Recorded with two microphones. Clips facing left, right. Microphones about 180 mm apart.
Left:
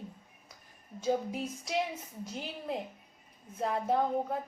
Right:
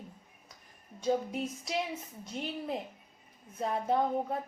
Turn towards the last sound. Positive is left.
turn(degrees=0)  # may be behind; listen again after turning